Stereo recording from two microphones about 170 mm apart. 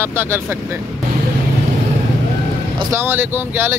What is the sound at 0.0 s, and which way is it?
Speech, 15° right (ahead or behind).